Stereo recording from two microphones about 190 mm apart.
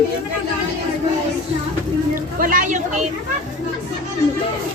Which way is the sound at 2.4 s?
45° right (ahead or behind).